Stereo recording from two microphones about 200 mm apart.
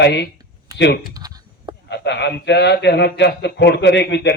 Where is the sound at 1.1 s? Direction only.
20° right (ahead or behind).